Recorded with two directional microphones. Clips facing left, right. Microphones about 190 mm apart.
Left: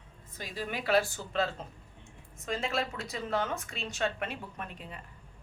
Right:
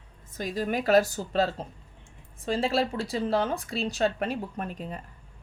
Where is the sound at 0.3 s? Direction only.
45° right (ahead or behind).